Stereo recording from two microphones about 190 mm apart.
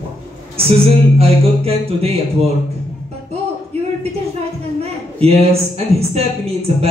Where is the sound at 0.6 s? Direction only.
30° right (ahead or behind).